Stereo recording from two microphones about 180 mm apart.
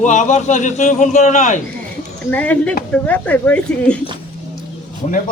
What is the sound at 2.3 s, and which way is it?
Speech, 10° left (ahead or behind).